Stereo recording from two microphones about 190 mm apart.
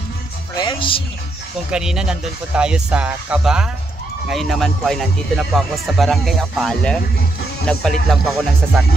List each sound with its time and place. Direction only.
0.6 s speech: 25° left (ahead or behind)
1.7 s speech: 5° right (ahead or behind)